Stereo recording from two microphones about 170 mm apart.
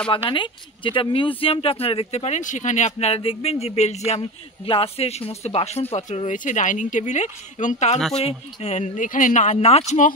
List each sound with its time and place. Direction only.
0.1 s speech: 30° left (ahead or behind)